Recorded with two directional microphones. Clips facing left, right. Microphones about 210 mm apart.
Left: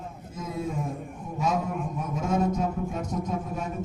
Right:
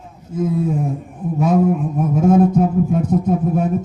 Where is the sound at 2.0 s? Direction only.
55° right (ahead or behind).